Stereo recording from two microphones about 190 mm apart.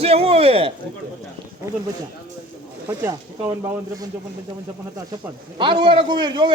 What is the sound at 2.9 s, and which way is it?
Speech, 15° right (ahead or behind).